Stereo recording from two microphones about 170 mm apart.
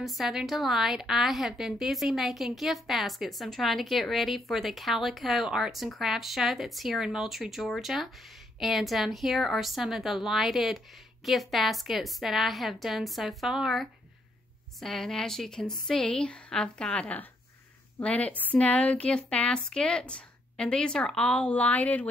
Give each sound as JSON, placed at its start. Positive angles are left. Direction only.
{"t": 0.0, "sound": "a woman's voice", "side_deg": 0}